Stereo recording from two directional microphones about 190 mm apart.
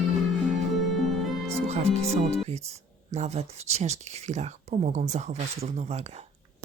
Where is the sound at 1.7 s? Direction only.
35° right (ahead or behind).